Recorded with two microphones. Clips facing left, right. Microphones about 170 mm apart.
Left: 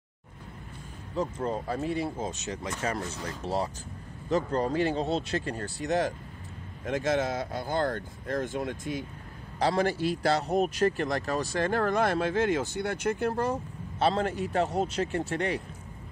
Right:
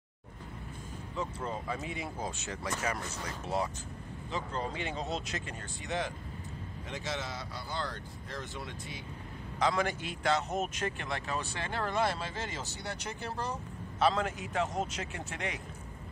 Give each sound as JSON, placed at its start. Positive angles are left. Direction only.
{"t": 1.1, "sound": "speech", "side_deg": 35}
{"t": 4.3, "sound": "speech", "side_deg": 40}
{"t": 9.6, "sound": "speech", "side_deg": 35}
{"t": 13.9, "sound": "speech", "side_deg": 30}